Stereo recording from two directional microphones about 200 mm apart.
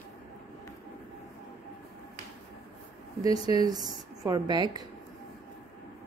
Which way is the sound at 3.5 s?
20° right (ahead or behind).